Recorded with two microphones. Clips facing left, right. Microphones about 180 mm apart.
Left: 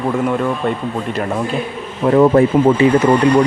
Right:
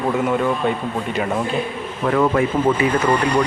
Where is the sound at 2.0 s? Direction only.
25° left (ahead or behind).